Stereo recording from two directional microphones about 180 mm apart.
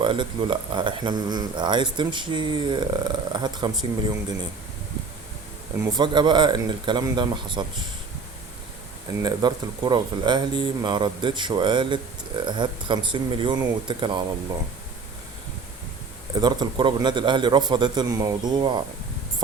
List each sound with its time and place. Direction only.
0.0 s speech: 25° right (ahead or behind)
5.8 s speech: 25° right (ahead or behind)
9.2 s speech: 25° right (ahead or behind)
16.3 s speech: 25° right (ahead or behind)